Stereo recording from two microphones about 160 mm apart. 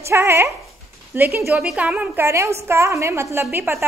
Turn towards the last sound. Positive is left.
turn(degrees=-15)  # may be behind; listen again after turning